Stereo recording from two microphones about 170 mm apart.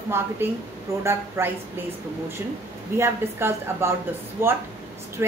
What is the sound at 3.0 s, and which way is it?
A woman's voice, 15° right (ahead or behind).